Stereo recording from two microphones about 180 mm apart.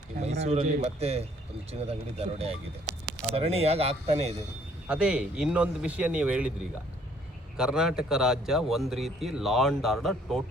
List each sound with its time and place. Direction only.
0.2 s a man's voice: 35° right (ahead or behind)
4.9 s speech: 5° right (ahead or behind)
7.5 s speech: 5° right (ahead or behind)